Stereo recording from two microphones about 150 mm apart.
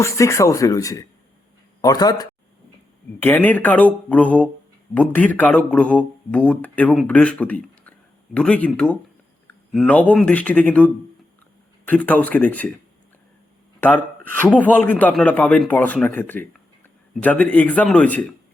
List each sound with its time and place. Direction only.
0.0 s speech: 20° left (ahead or behind)
3.2 s speech: 10° left (ahead or behind)
13.8 s speech: 10° left (ahead or behind)